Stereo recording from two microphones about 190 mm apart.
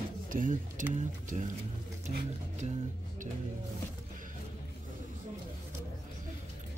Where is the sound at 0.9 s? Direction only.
40° right (ahead or behind).